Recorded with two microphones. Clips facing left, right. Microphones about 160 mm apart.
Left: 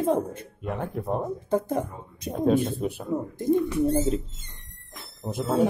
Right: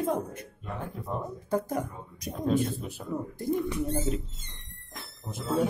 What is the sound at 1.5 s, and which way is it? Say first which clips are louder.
A man's voice: left 3 dB; 25° left (ahead or behind).